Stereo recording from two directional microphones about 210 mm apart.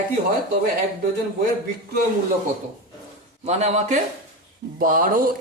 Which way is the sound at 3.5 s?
30° right (ahead or behind).